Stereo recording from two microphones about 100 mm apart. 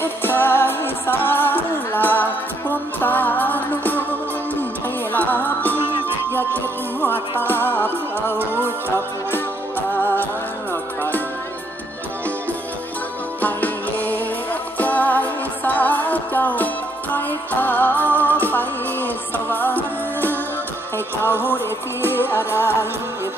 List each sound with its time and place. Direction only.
0.0 s music: 20° left (ahead or behind)
5.1 s music: 20° left (ahead or behind)
8.4 s music: 20° right (ahead or behind)
9.3 s music: 20° left (ahead or behind)
13.4 s music: 15° left (ahead or behind)